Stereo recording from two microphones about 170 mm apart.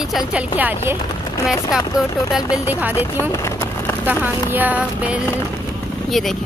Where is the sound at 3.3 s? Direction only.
15° left (ahead or behind).